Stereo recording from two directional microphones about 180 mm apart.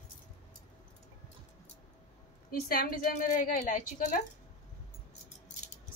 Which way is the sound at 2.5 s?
55° left (ahead or behind).